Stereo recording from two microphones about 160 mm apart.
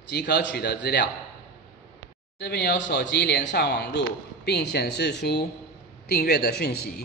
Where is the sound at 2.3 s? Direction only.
90° left.